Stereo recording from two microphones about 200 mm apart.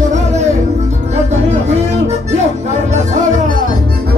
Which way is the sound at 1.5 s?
35° right (ahead or behind).